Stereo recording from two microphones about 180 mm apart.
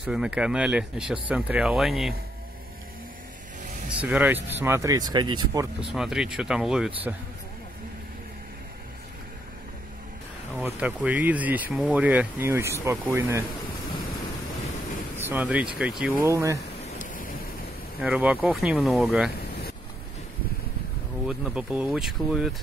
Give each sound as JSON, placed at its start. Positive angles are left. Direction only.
{"t": 0.0, "sound": "speech", "side_deg": -5}
{"t": 4.0, "sound": "speech", "side_deg": -10}
{"t": 5.9, "sound": "speech", "side_deg": 0}
{"t": 10.6, "sound": "speech", "side_deg": -10}
{"t": 15.1, "sound": "speech", "side_deg": -10}
{"t": 16.3, "sound": "speech", "side_deg": -15}
{"t": 17.0, "sound": "a sound", "side_deg": 50}
{"t": 18.0, "sound": "speech", "side_deg": -10}
{"t": 21.3, "sound": "speech", "side_deg": -5}